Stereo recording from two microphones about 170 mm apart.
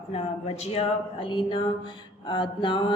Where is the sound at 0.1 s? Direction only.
35° left (ahead or behind).